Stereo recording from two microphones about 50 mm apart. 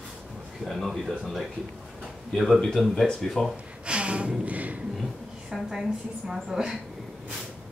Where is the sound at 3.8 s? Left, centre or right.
Right.